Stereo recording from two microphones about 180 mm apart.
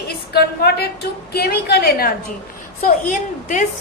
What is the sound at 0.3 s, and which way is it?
A woman's voice, 60° left (ahead or behind).